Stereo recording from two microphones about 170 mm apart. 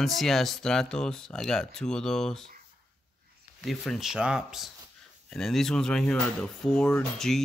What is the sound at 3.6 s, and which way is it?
Speech, centre (ahead or behind).